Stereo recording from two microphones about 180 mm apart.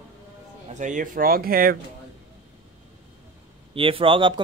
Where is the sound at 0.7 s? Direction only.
45° right (ahead or behind).